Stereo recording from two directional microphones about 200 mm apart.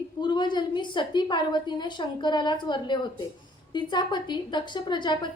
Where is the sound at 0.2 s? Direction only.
20° left (ahead or behind).